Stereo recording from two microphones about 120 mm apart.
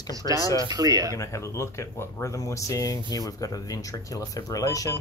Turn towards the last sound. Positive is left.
turn(degrees=30)  # may be behind; listen again after turning